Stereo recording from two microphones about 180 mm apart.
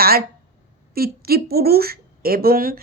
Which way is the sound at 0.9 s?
55° right (ahead or behind).